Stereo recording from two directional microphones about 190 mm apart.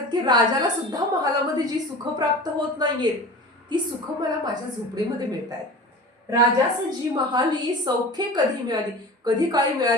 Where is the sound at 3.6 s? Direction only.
25° right (ahead or behind).